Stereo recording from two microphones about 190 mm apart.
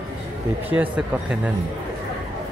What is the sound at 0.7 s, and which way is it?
Speech, 10° right (ahead or behind).